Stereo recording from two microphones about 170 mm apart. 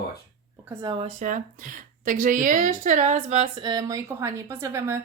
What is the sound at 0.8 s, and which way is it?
Speech, 25° right (ahead or behind).